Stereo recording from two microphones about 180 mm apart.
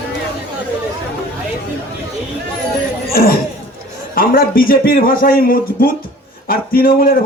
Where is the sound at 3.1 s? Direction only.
55° left (ahead or behind).